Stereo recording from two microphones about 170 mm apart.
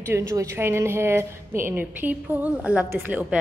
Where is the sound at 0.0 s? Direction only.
15° right (ahead or behind).